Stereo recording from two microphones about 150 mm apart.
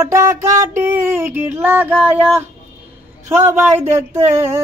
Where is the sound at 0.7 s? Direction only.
15° right (ahead or behind).